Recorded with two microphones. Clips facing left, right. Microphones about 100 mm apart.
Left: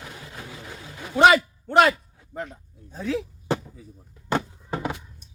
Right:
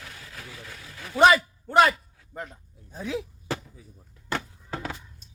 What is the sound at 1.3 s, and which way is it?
A man's voice, centre (ahead or behind).